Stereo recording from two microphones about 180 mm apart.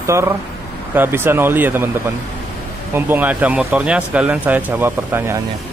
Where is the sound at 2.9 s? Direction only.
10° right (ahead or behind).